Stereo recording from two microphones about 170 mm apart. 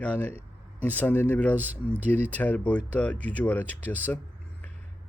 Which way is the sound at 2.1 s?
10° left (ahead or behind).